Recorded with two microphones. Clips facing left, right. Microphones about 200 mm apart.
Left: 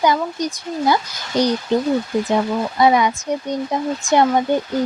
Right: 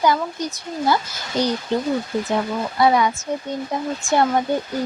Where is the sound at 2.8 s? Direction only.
20° left (ahead or behind).